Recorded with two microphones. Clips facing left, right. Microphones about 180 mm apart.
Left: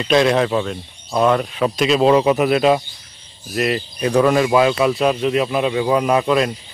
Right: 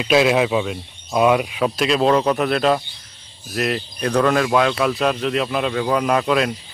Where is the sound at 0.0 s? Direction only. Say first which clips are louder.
Left 1 dB; 5° right (ahead or behind).